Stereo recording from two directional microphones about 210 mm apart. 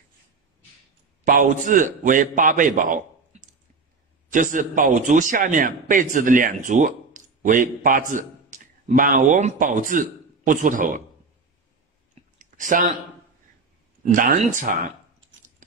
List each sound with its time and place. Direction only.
1.2 s a man's voice: 35° right (ahead or behind)
4.3 s a man's voice: 40° right (ahead or behind)
12.4 s clicking: 40° right (ahead or behind)
14.1 s a man's voice: 40° right (ahead or behind)